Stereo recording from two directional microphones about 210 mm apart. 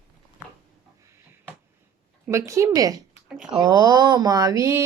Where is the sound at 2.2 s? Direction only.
15° right (ahead or behind).